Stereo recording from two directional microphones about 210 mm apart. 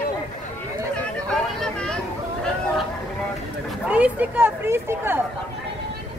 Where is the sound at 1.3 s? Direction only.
Centre (ahead or behind).